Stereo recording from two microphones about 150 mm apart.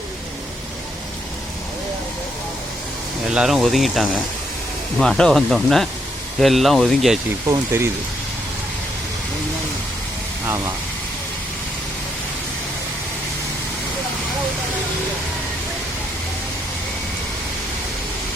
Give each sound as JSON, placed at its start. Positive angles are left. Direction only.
{"t": 3.2, "sound": "speech", "side_deg": -5}
{"t": 7.4, "sound": "speech", "side_deg": -20}